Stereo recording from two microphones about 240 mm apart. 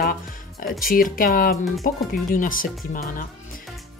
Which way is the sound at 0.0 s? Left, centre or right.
Left.